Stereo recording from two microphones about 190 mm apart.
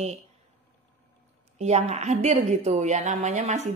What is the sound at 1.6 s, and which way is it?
Speech, 35° right (ahead or behind).